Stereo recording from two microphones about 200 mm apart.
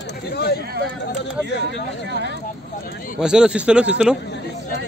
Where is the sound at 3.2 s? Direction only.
5° right (ahead or behind).